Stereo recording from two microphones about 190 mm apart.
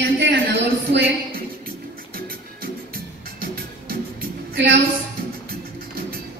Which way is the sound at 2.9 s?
50° right (ahead or behind).